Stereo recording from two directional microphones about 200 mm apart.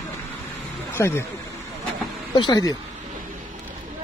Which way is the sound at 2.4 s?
20° left (ahead or behind).